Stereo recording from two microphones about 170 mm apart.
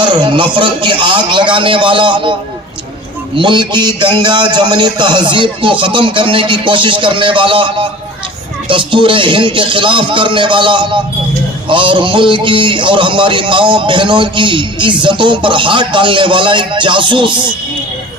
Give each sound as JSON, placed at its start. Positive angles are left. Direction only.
{"t": 0.0, "sound": "a man's voice", "side_deg": -25}
{"t": 3.3, "sound": "a man's voice", "side_deg": -25}